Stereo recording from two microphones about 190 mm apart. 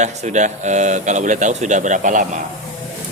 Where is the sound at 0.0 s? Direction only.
35° right (ahead or behind).